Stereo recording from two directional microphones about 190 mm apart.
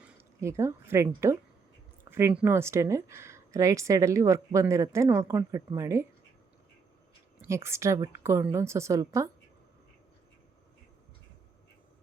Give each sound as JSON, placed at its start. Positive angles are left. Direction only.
{"t": 0.0, "sound": "speech", "side_deg": -15}
{"t": 7.4, "sound": "speech", "side_deg": -15}